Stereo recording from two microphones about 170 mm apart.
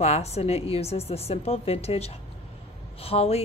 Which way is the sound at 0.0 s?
40° left (ahead or behind).